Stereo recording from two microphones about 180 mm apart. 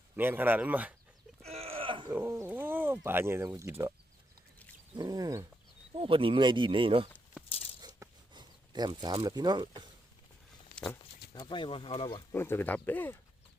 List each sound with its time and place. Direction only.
0.2 s speech: 10° right (ahead or behind)
1.4 s a sound: 35° right (ahead or behind)
2.1 s speech: 15° right (ahead or behind)
4.9 s speech: 20° right (ahead or behind)
5.9 s speech: 30° right (ahead or behind)
7.8 s zipper: 20° right (ahead or behind)
10.8 s speech: 5° left (ahead or behind)
11.3 s speech: 25° left (ahead or behind)
12.3 s speech: 10° left (ahead or behind)